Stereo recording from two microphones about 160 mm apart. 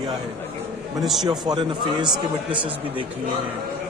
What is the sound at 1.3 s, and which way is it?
Speech, 25° right (ahead or behind).